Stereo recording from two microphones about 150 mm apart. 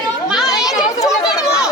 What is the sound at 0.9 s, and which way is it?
Speech, 25° left (ahead or behind).